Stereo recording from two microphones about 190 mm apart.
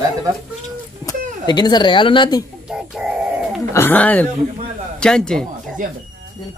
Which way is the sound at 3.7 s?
10° left (ahead or behind).